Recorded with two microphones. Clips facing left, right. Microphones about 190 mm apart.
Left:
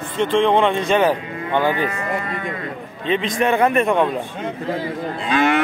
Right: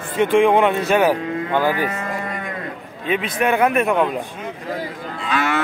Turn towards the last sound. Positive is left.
turn(degrees=20)  # may be behind; listen again after turning